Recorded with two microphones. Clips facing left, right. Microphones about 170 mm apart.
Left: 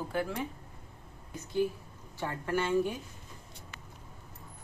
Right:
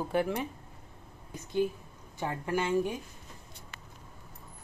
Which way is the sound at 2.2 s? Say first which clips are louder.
Right 1 dB; 20° right (ahead or behind).